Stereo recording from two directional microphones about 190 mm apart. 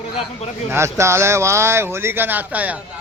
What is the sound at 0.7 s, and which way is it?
Speech, 15° right (ahead or behind).